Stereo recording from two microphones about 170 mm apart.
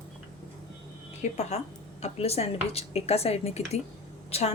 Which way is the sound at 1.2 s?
40° left (ahead or behind).